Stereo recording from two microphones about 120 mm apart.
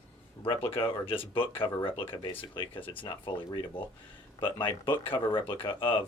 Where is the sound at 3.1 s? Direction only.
40° left (ahead or behind).